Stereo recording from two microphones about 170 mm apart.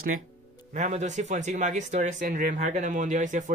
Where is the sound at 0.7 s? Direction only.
45° right (ahead or behind).